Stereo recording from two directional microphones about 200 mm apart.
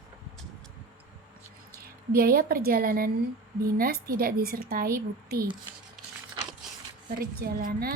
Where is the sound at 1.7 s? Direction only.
45° right (ahead or behind).